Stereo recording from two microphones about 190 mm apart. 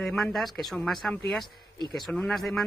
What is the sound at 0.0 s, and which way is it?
Speech, centre (ahead or behind).